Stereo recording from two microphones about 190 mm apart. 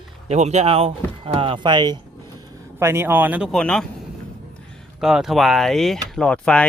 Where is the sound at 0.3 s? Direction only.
35° right (ahead or behind); by 3.8 s centre (ahead or behind).